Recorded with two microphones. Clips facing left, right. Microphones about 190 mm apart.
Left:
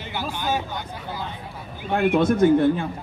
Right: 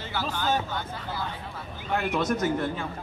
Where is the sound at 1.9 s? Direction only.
55° left (ahead or behind).